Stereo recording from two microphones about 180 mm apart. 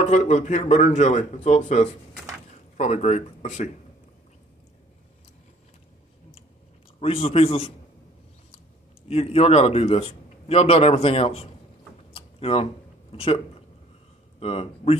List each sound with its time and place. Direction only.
0.0 s a man's voice: 40° left (ahead or behind)
7.0 s a man's voice: 35° left (ahead or behind)
9.0 s a man's voice: 35° left (ahead or behind)
12.1 s a sound: 30° left (ahead or behind)
13.1 s a man's voice: 35° left (ahead or behind)